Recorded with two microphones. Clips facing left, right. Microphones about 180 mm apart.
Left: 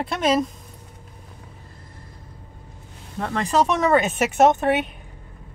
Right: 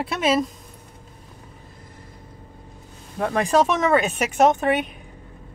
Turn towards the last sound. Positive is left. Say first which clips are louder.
# left 1 dB
turn(degrees=0)  # may be behind; listen again after turning